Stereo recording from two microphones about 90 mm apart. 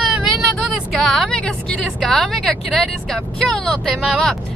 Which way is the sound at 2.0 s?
5° left (ahead or behind).